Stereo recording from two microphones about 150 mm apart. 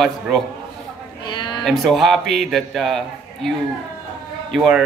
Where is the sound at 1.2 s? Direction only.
30° left (ahead or behind).